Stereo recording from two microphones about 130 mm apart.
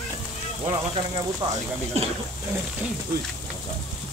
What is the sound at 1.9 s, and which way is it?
Speech, 55° right (ahead or behind).